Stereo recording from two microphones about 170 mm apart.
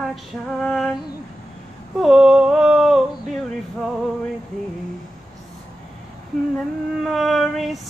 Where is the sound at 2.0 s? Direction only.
Centre (ahead or behind).